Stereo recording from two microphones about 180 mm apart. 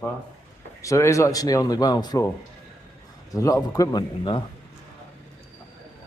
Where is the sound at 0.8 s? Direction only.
15° left (ahead or behind).